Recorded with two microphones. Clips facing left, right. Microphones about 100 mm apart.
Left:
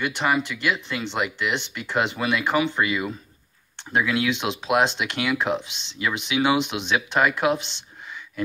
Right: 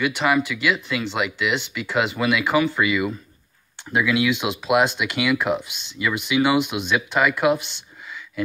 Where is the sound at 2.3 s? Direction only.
10° right (ahead or behind).